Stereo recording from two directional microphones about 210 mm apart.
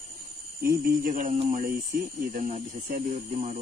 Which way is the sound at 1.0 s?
40° right (ahead or behind).